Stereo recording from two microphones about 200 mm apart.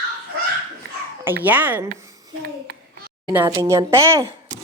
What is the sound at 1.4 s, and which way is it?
Speech, 10° right (ahead or behind).